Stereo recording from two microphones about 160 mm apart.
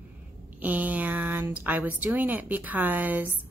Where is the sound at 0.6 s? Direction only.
10° right (ahead or behind).